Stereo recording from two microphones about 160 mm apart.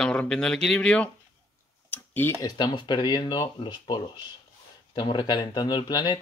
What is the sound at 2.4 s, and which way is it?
Speech, 25° left (ahead or behind).